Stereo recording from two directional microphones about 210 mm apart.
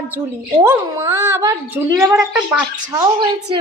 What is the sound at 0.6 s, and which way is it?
A woman's voice, 15° right (ahead or behind).